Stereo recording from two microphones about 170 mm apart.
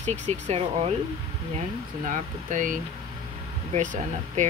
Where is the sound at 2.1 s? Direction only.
50° right (ahead or behind).